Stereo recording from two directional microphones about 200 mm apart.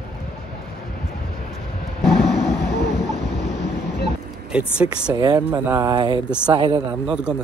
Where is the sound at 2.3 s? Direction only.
55° left (ahead or behind).